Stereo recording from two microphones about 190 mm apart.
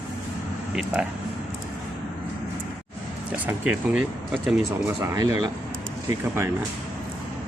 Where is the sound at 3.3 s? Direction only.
10° right (ahead or behind).